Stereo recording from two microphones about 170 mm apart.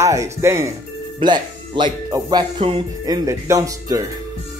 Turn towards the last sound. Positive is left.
turn(degrees=-20)  # may be behind; listen again after turning